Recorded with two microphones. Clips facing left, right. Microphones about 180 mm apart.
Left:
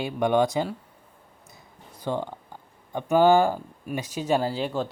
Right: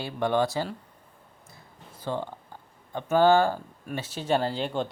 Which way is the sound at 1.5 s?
15° left (ahead or behind).